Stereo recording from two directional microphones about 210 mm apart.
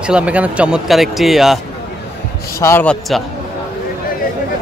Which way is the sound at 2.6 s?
10° left (ahead or behind).